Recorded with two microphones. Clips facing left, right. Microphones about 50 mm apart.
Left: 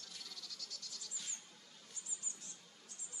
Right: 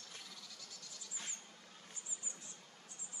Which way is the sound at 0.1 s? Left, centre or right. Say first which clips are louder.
Even; right.